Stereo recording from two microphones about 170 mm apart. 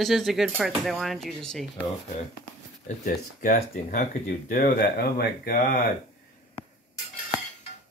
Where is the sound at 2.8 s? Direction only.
55° left (ahead or behind).